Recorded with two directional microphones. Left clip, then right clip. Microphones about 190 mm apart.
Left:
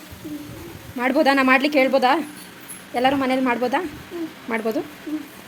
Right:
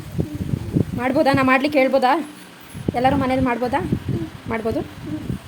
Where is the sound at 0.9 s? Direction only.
Centre (ahead or behind).